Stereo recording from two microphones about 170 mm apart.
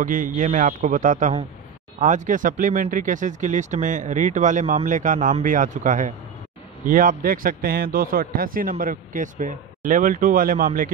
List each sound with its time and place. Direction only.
0.0 s a man's voice: 50° right (ahead or behind)